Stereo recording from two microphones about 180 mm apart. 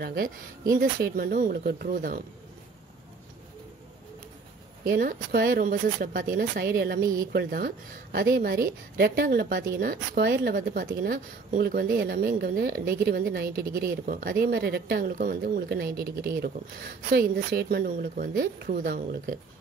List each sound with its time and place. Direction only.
0.0 s speech: 60° right (ahead or behind)
4.8 s a woman's voice: 55° right (ahead or behind)